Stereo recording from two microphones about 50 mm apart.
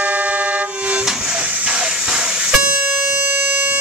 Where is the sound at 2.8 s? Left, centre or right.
Right.